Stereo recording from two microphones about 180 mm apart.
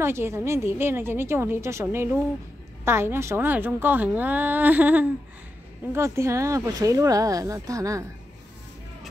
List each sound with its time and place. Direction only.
0.0 s a woman's voice: 15° right (ahead or behind)